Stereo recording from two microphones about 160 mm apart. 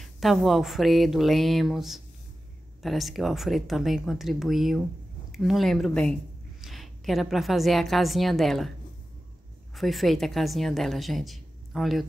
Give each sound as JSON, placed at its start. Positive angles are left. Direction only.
{"t": 0.0, "sound": "a woman's voice", "side_deg": 0}
{"t": 9.8, "sound": "a woman's voice", "side_deg": 0}